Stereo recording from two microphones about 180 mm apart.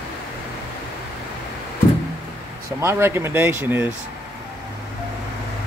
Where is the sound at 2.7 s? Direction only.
15° right (ahead or behind).